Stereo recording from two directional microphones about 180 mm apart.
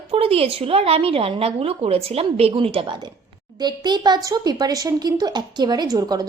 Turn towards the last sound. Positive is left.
turn(degrees=-20)  # may be behind; listen again after turning